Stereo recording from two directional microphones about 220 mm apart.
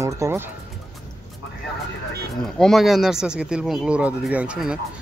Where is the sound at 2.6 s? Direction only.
Centre (ahead or behind).